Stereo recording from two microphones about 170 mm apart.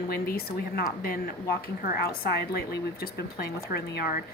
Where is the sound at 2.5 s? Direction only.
70° left (ahead or behind).